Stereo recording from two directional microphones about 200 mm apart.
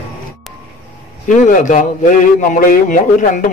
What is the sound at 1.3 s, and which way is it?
A man's voice, 40° left (ahead or behind).